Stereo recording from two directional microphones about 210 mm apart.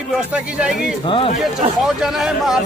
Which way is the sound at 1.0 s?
25° left (ahead or behind).